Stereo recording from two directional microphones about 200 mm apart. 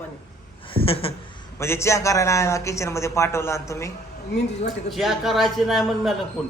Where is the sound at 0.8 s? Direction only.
30° left (ahead or behind).